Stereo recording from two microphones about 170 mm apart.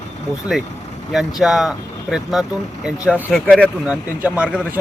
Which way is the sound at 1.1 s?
Centre (ahead or behind).